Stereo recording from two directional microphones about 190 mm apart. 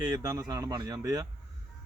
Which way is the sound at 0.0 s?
20° right (ahead or behind).